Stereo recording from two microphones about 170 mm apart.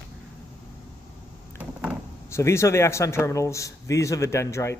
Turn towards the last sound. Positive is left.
turn(degrees=15)  # may be behind; listen again after turning